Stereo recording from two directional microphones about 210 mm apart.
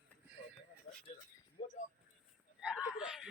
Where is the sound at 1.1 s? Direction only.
35° left (ahead or behind).